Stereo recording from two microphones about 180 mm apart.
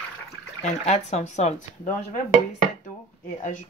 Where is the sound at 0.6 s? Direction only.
35° left (ahead or behind).